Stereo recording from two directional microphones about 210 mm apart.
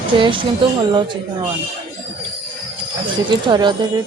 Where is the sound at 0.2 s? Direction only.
25° right (ahead or behind).